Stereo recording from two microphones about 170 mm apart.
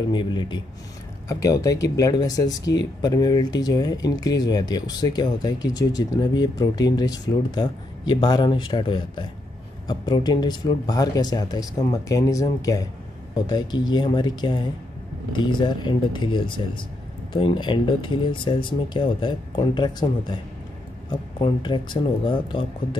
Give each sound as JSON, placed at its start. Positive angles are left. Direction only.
{"t": 0.1, "sound": "speech", "side_deg": 25}